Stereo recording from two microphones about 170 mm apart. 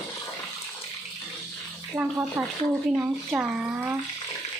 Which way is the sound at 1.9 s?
10° right (ahead or behind).